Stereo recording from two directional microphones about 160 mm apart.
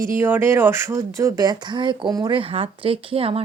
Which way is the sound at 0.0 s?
15° right (ahead or behind).